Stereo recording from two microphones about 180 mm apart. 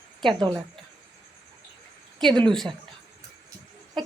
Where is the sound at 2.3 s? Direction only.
25° right (ahead or behind).